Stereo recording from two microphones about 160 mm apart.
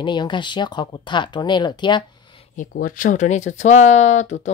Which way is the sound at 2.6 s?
60° left (ahead or behind).